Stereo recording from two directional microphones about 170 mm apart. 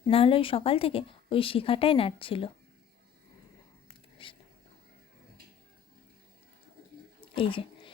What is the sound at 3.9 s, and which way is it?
Whispering, 30° left (ahead or behind).